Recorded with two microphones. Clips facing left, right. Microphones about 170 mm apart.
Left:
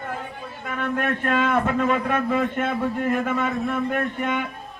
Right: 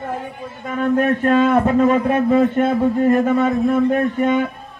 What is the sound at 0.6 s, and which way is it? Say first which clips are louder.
A man's voice: right 8 dB; 35° right (ahead or behind).